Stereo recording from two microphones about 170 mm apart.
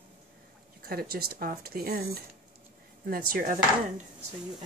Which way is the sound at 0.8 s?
65° right (ahead or behind).